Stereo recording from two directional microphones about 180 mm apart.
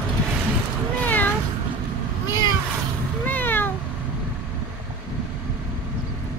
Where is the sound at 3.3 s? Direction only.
10° left (ahead or behind).